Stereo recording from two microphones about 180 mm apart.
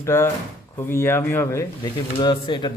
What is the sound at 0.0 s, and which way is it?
A man's voice, 15° left (ahead or behind).